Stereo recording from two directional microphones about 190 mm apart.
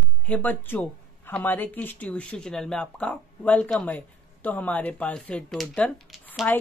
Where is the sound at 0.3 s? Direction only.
10° left (ahead or behind).